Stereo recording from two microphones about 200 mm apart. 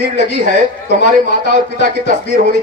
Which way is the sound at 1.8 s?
40° right (ahead or behind).